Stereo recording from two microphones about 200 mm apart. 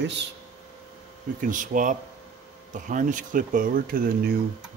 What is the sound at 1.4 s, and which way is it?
Speech, 40° right (ahead or behind).